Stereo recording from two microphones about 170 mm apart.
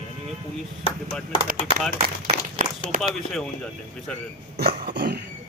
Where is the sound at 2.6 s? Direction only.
55° right (ahead or behind).